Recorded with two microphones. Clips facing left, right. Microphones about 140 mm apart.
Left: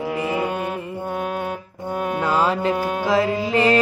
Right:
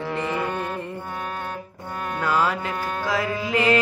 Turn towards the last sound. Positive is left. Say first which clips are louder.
# left 3 dB
turn(degrees=30)  # may be behind; listen again after turning